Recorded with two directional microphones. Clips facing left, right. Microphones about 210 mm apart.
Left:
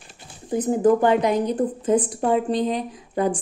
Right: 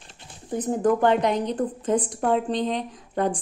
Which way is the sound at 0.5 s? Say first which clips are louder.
Left 4 dB; 5° left (ahead or behind).